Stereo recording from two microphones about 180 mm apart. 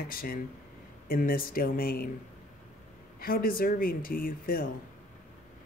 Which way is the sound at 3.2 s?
55° left (ahead or behind).